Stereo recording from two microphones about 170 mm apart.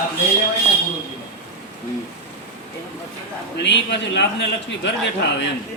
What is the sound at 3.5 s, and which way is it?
A man's voice, 90° left.